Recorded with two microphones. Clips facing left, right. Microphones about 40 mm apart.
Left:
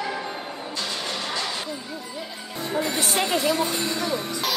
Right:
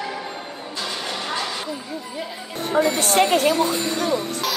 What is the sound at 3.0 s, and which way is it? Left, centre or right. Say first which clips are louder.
Speech: right 6 dB; right.